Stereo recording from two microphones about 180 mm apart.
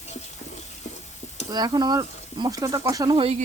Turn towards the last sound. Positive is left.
turn(degrees=-30)  # may be behind; listen again after turning